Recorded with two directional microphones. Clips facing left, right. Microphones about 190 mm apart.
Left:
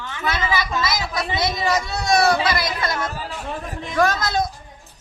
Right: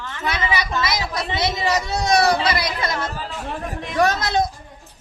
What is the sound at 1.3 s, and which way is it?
Speech, 20° right (ahead or behind).